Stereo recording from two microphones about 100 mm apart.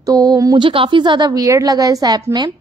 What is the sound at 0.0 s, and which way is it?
Speech, 35° right (ahead or behind).